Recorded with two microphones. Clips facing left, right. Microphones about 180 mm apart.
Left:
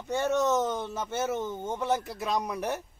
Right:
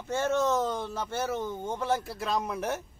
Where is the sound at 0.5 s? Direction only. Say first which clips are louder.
Left 1 dB; 20° left (ahead or behind).